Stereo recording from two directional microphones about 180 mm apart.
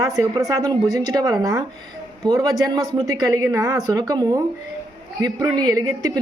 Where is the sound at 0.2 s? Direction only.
20° right (ahead or behind).